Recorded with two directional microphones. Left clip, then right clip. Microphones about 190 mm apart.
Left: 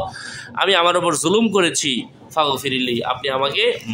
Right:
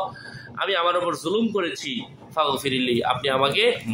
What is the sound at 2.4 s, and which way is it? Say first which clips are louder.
A man's voice: left 4 dB; 15° left (ahead or behind).